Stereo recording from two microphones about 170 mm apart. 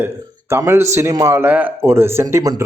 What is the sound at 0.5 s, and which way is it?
Speech, 15° right (ahead or behind).